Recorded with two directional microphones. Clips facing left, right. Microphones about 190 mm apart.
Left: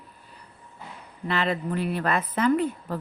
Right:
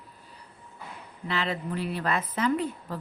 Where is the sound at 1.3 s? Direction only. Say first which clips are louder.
Left 4 dB; 55° left (ahead or behind).